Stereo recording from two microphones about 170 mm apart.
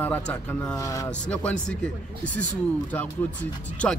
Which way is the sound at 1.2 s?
5° left (ahead or behind).